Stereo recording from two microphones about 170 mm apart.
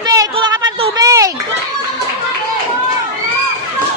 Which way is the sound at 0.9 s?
20° right (ahead or behind).